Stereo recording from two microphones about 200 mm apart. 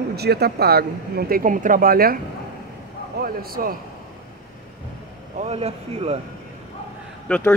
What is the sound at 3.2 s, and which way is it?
Speech, 45° right (ahead or behind).